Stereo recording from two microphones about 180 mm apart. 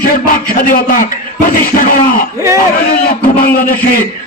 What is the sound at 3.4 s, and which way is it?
Speech, 50° left (ahead or behind).